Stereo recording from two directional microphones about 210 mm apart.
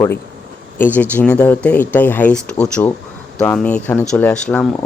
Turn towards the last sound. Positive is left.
turn(degrees=5)  # may be behind; listen again after turning